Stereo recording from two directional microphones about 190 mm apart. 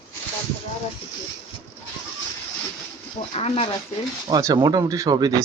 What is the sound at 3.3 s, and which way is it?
Speech, 35° left (ahead or behind).